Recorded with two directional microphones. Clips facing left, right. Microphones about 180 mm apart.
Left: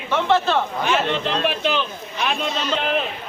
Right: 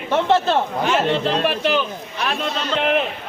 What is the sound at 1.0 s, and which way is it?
Speech, 40° right (ahead or behind).